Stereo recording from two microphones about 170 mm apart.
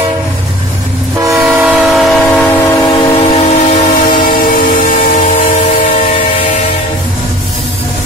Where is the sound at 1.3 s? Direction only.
10° right (ahead or behind).